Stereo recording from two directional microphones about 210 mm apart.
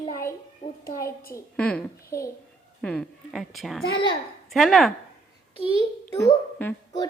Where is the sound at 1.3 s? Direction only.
5° left (ahead or behind).